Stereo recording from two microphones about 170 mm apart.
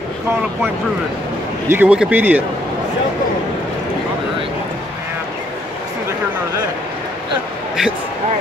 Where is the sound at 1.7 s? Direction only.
10° right (ahead or behind).